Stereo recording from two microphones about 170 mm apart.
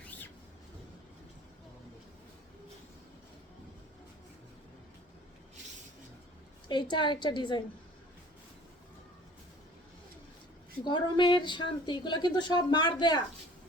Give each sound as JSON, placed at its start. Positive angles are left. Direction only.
{"t": 0.0, "sound": "a sound", "side_deg": 10}
{"t": 6.7, "sound": "speech", "side_deg": 25}
{"t": 10.8, "sound": "speech", "side_deg": 25}